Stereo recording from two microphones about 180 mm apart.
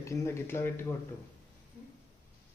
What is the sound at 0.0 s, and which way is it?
Speech, 15° left (ahead or behind).